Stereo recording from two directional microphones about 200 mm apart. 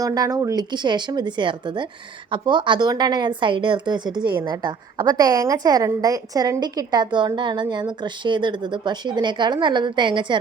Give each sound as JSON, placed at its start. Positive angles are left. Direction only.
{"t": 0.0, "sound": "a woman's voice", "side_deg": -15}